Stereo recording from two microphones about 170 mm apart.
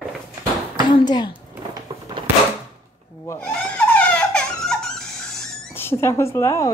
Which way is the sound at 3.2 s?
10° left (ahead or behind).